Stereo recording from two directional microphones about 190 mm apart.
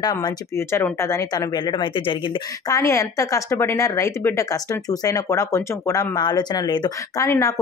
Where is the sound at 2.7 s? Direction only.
15° left (ahead or behind).